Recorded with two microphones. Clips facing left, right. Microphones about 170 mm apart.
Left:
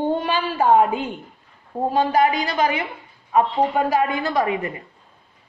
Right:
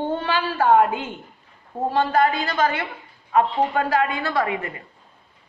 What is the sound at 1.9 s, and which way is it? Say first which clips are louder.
A woman's voice: left 1 dB; 15° left (ahead or behind).